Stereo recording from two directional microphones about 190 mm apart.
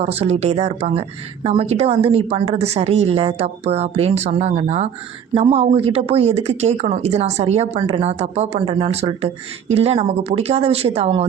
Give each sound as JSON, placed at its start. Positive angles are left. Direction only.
{"t": 0.0, "sound": "speech", "side_deg": -35}